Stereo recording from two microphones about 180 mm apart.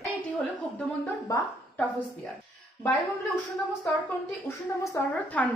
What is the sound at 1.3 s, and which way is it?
Speech, 15° left (ahead or behind).